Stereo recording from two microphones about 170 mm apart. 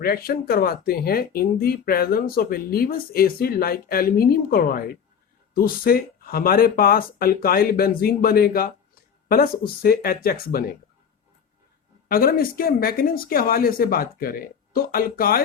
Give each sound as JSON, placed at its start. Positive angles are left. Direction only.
{"t": 0.0, "sound": "speech", "side_deg": 60}
{"t": 12.0, "sound": "speech", "side_deg": 60}